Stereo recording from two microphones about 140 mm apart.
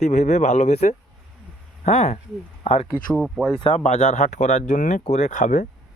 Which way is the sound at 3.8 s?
50° left (ahead or behind).